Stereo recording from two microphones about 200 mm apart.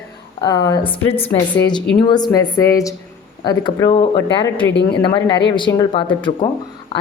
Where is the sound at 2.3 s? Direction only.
15° left (ahead or behind).